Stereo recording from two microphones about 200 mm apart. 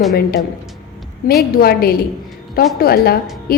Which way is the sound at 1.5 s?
50° left (ahead or behind).